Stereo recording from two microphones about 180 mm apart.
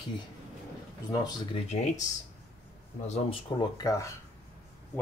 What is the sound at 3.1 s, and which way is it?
Speech, 30° left (ahead or behind).